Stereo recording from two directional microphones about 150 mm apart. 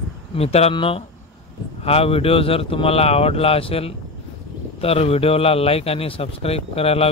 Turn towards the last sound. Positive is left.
turn(degrees=40)  # may be behind; listen again after turning